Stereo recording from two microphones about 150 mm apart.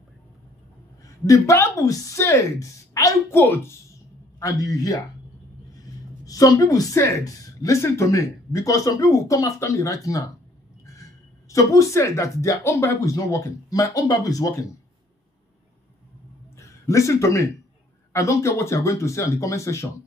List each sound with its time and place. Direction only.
1.2 s a woman's voice: 20° left (ahead or behind)
6.2 s a woman's voice: 25° left (ahead or behind)
16.5 s a sound: 20° left (ahead or behind)
18.1 s a woman's voice: 20° left (ahead or behind)